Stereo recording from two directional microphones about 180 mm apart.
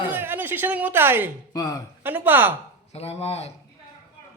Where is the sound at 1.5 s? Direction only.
20° left (ahead or behind).